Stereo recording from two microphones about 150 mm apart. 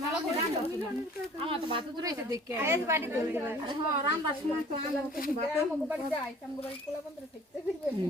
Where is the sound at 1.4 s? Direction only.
35° right (ahead or behind).